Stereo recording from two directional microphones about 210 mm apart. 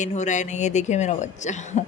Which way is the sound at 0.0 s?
35° left (ahead or behind).